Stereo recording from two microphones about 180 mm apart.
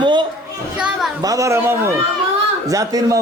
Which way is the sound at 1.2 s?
20° right (ahead or behind).